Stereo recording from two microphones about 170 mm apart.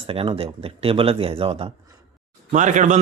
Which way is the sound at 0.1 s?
35° right (ahead or behind).